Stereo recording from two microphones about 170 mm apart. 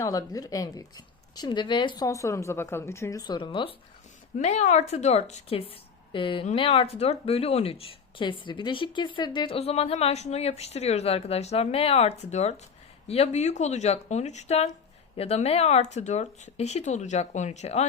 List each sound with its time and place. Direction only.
0.0 s speech: 20° left (ahead or behind)
2.0 s a woman's voice: 15° left (ahead or behind)
4.4 s speech: 40° left (ahead or behind)